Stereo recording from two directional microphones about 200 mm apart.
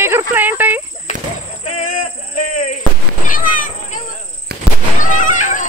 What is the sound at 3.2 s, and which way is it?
Cat, 40° left (ahead or behind).